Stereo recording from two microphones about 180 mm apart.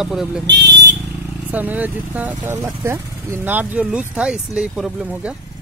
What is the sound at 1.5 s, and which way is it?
Speech, 10° right (ahead or behind).